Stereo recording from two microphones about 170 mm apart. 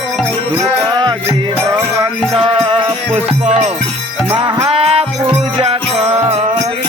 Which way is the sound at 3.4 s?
40° right (ahead or behind).